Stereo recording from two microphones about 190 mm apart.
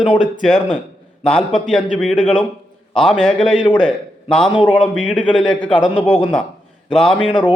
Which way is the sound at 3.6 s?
25° left (ahead or behind).